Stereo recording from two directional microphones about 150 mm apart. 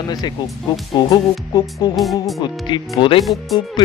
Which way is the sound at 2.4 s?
30° left (ahead or behind).